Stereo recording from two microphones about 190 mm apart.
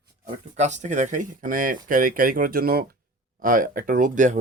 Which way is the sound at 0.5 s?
35° right (ahead or behind).